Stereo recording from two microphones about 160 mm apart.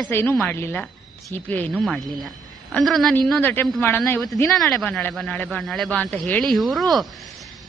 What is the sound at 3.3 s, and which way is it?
Speech, 10° left (ahead or behind).